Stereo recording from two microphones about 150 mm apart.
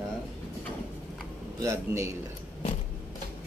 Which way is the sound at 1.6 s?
20° right (ahead or behind).